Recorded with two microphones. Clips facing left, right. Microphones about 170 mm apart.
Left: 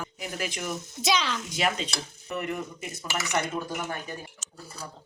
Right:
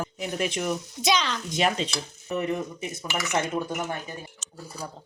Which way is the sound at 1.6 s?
30° right (ahead or behind).